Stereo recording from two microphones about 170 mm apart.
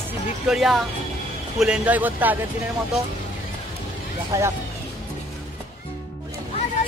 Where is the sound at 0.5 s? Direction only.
Centre (ahead or behind).